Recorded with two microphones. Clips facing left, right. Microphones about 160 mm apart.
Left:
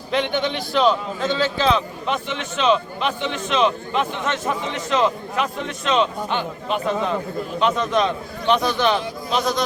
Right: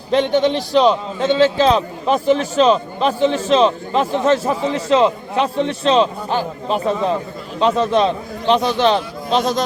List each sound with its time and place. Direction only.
0.1 s a man's voice: 35° right (ahead or behind)